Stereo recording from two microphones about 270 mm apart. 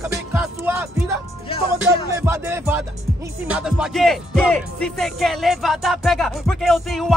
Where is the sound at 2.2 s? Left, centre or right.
Centre.